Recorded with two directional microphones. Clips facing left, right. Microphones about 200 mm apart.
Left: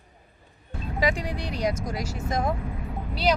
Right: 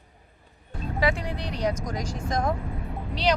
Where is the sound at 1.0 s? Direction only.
15° left (ahead or behind).